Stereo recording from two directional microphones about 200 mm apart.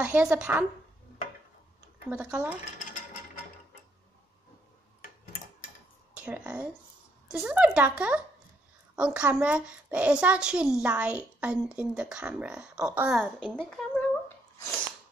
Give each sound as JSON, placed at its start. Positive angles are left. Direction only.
{"t": 0.0, "sound": "speech", "side_deg": -5}
{"t": 2.0, "sound": "a woman's voice", "side_deg": -5}
{"t": 6.1, "sound": "a woman's voice", "side_deg": -5}